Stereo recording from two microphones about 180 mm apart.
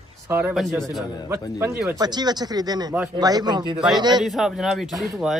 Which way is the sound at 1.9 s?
20° right (ahead or behind).